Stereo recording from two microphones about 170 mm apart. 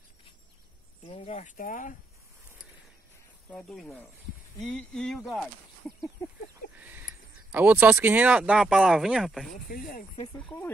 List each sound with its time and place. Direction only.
1.0 s speech: 35° left (ahead or behind)
3.4 s speech: 5° left (ahead or behind)
6.8 s a sound: 10° right (ahead or behind)
7.5 s speech: 10° right (ahead or behind)
9.5 s speech: 55° left (ahead or behind)
10.3 s speech: 10° left (ahead or behind)